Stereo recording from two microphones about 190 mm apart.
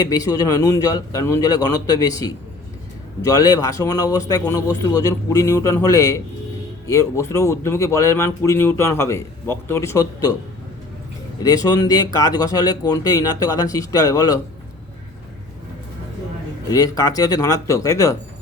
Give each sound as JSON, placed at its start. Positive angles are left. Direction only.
{"t": 0.0, "sound": "speech", "side_deg": 20}
{"t": 11.4, "sound": "speech", "side_deg": 20}
{"t": 16.6, "sound": "speech", "side_deg": 20}